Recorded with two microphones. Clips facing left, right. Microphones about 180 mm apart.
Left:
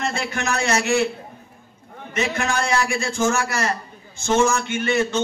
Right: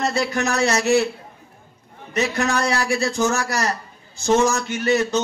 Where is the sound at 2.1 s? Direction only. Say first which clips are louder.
Right 2 dB; 40° right (ahead or behind).